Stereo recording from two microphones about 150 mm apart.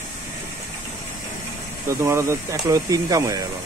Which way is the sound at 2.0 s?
20° right (ahead or behind).